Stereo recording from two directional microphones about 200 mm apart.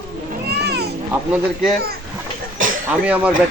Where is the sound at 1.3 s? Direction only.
5° right (ahead or behind).